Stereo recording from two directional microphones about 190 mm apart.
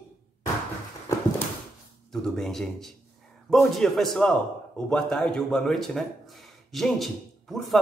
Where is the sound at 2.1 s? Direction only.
Centre (ahead or behind).